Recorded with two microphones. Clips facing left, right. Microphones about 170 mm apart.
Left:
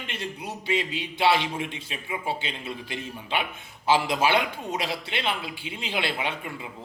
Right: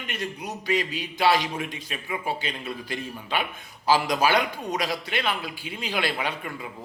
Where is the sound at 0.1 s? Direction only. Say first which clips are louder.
Right 3 dB; 25° left (ahead or behind).